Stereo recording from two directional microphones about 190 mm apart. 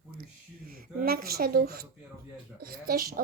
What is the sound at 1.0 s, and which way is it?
Speech, 55° right (ahead or behind).